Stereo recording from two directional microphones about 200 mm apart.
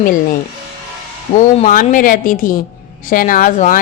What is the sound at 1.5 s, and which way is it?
Speech, 40° left (ahead or behind).